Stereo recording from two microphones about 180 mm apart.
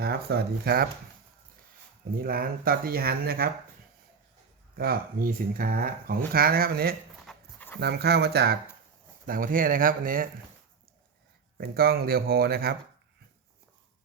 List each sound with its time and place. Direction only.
0.0 s speech: 60° right (ahead or behind)
2.2 s speech: 55° right (ahead or behind)
4.8 s speech: 55° right (ahead or behind)
7.3 s dog: 10° left (ahead or behind)
7.8 s speech: 65° right (ahead or behind)
9.2 s speech: 50° right (ahead or behind)
11.5 s speech: 55° right (ahead or behind)